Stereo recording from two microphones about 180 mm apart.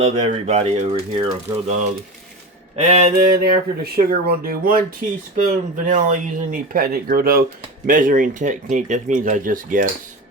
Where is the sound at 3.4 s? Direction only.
55° right (ahead or behind).